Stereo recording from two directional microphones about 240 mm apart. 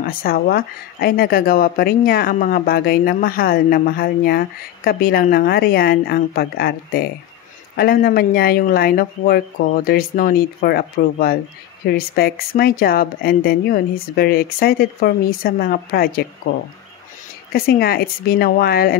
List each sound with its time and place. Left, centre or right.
0.0 s speech: left
17.5 s speech: left